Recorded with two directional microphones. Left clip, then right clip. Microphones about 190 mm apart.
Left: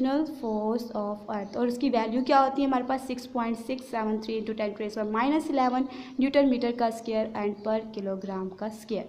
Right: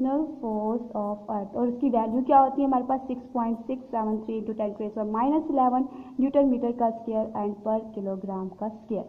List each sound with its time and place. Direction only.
0.0 s a woman's voice: 20° left (ahead or behind)
1.3 s a woman's voice: 15° left (ahead or behind)